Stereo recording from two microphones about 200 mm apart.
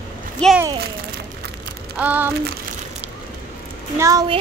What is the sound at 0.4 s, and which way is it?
Speech, 5° left (ahead or behind).